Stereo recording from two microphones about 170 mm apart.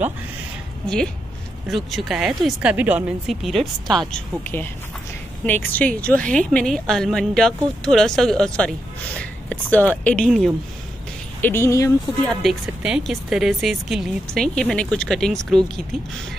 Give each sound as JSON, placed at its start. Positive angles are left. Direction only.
{"t": 0.8, "sound": "a woman's voice", "side_deg": 5}
{"t": 3.8, "sound": "speech", "side_deg": -25}
{"t": 4.1, "sound": "a woman's voice", "side_deg": 10}
{"t": 11.4, "sound": "speech", "side_deg": 15}
{"t": 12.3, "sound": "a woman's voice", "side_deg": -5}